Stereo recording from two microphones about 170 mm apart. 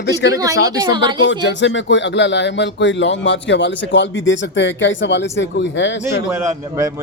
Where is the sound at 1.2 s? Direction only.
90° left.